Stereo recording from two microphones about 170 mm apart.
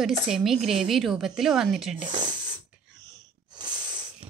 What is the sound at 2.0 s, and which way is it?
Speech, 25° right (ahead or behind).